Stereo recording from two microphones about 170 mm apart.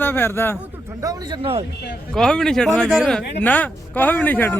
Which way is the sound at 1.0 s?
20° right (ahead or behind).